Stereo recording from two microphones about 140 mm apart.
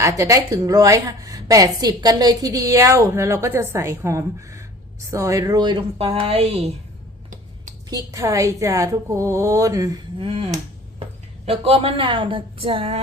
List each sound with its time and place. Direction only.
0.0 s a woman's voice: 20° right (ahead or behind); by 6.7 s 45° right (ahead or behind)
7.9 s a woman's voice: 25° right (ahead or behind)
10.2 s speech: 45° right (ahead or behind)